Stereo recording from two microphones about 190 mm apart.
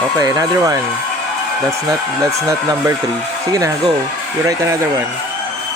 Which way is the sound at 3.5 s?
20° right (ahead or behind).